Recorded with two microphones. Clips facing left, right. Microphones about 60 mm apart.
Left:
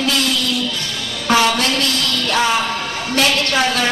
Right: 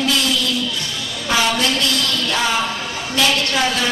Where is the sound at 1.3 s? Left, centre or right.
Left.